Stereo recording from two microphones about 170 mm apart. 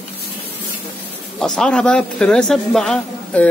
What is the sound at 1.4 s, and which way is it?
Speech, 5° left (ahead or behind).